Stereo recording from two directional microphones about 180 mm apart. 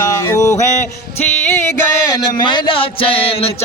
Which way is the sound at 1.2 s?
10° left (ahead or behind).